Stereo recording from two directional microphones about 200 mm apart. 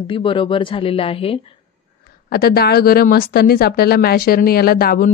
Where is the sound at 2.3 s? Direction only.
50° left (ahead or behind).